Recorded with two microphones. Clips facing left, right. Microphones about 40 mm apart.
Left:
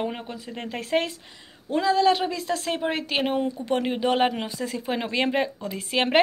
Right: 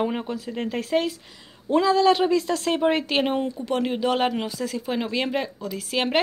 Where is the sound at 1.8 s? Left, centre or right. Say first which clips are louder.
Right 2 dB; centre.